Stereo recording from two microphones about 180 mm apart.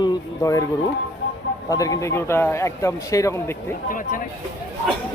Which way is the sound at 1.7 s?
20° left (ahead or behind).